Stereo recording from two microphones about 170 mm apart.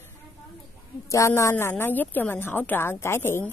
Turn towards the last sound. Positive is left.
turn(degrees=15)  # may be behind; listen again after turning